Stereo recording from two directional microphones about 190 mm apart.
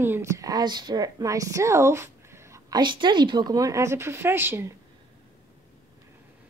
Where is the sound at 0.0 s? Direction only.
15° right (ahead or behind).